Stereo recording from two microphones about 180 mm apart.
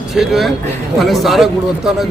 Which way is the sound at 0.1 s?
Centre (ahead or behind).